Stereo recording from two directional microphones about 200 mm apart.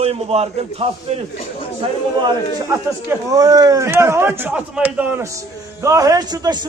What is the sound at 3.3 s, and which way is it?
A man's voice, 15° right (ahead or behind).